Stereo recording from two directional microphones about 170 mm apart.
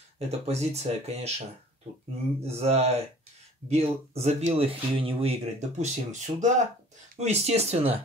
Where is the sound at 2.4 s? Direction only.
40° right (ahead or behind).